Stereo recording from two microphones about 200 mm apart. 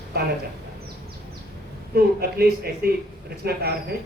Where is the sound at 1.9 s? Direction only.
50° right (ahead or behind).